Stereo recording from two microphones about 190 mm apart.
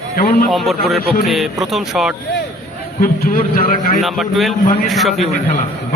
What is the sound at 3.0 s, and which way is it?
Speech, 50° left (ahead or behind).